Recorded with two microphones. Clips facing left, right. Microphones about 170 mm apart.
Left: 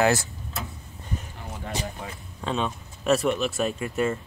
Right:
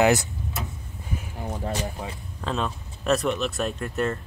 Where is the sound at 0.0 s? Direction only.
15° right (ahead or behind).